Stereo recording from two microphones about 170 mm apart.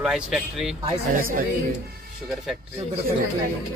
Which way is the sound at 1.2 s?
60° right (ahead or behind).